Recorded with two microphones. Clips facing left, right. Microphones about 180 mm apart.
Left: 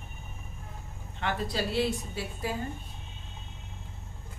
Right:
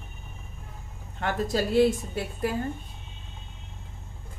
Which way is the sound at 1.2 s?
45° right (ahead or behind).